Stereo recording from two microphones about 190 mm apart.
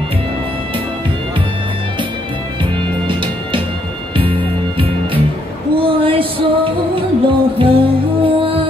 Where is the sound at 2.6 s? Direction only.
25° right (ahead or behind).